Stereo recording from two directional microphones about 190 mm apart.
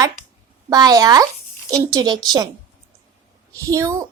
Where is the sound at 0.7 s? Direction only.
20° right (ahead or behind).